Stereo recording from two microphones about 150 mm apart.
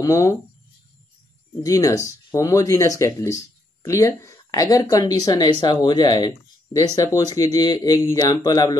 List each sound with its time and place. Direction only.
0.0 s speech: 20° left (ahead or behind)
1.6 s speech: 25° left (ahead or behind)